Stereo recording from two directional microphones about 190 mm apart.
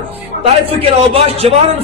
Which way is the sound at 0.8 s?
30° right (ahead or behind).